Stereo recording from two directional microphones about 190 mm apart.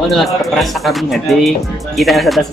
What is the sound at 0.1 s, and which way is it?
Speech, centre (ahead or behind).